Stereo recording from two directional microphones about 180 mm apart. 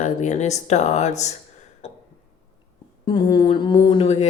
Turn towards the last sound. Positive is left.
turn(degrees=35)  # may be behind; listen again after turning